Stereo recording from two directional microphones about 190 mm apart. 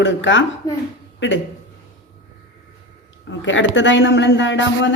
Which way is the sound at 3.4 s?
80° left.